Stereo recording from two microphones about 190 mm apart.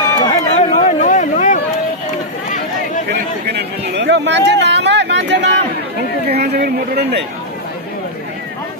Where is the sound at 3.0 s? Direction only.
60° right (ahead or behind).